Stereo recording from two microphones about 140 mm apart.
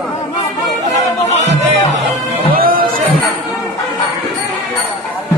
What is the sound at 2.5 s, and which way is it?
Music, 90° right.